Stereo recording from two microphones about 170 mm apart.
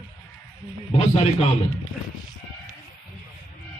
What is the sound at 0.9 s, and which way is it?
Speech, 40° left (ahead or behind).